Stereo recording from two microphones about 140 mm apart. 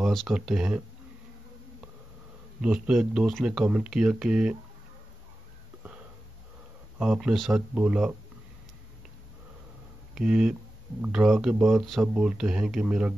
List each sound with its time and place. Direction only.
0.0 s speech: centre (ahead or behind)
2.6 s speech: 5° right (ahead or behind)
7.0 s speech: 5° right (ahead or behind)
10.1 s speech: 5° right (ahead or behind)